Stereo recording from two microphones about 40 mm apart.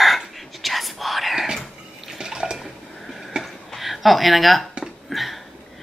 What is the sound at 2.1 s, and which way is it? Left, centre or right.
Water, centre.